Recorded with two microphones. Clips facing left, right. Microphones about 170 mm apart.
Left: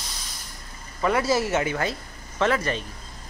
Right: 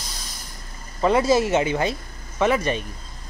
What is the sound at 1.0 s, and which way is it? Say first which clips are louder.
Speech: right 4 dB; 25° right (ahead or behind).